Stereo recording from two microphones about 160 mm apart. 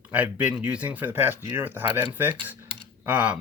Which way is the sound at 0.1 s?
10° right (ahead or behind).